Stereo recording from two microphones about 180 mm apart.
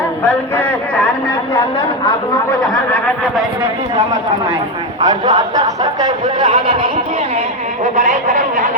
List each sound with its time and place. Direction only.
0.3 s speech: 10° left (ahead or behind)
2.0 s speech: 20° left (ahead or behind)
5.0 s speech: 25° right (ahead or behind)
7.9 s speech: 45° right (ahead or behind)